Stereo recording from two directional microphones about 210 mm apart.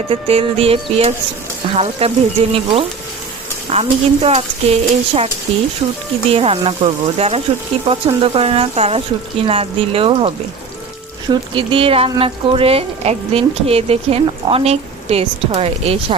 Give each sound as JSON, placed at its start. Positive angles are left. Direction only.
{"t": 0.1, "sound": "speech", "side_deg": -25}
{"t": 6.3, "sound": "speech", "side_deg": -30}